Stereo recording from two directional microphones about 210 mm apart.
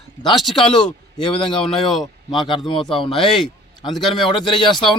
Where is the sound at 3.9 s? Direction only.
Centre (ahead or behind).